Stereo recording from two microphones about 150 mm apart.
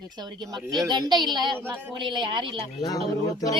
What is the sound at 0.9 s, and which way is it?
A child's voice, 30° right (ahead or behind).